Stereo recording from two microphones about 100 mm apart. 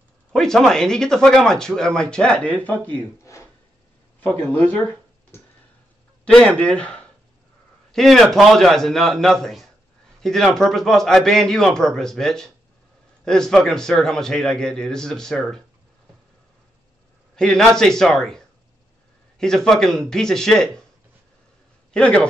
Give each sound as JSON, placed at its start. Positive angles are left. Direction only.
{"t": 0.3, "sound": "a man's voice", "side_deg": 5}
{"t": 4.2, "sound": "a man's voice", "side_deg": 15}
{"t": 17.4, "sound": "a man's voice", "side_deg": 5}
{"t": 21.9, "sound": "speech", "side_deg": 10}